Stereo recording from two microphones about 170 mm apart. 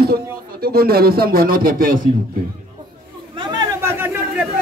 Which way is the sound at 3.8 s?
15° right (ahead or behind).